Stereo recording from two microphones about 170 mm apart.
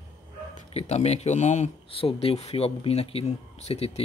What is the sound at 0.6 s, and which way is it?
Speech, 40° left (ahead or behind).